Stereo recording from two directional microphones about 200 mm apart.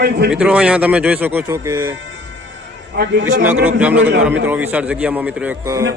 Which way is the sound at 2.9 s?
60° right (ahead or behind).